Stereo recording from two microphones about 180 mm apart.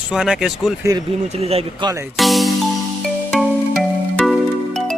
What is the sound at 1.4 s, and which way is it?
Speech, 35° right (ahead or behind).